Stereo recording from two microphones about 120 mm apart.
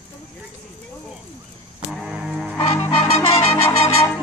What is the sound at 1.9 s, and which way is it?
Music, 5° right (ahead or behind).